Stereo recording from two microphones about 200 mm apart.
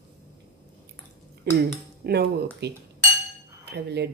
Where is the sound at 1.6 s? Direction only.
55° right (ahead or behind).